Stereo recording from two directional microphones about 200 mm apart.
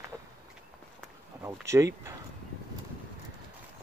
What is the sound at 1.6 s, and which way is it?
Speech, 15° right (ahead or behind).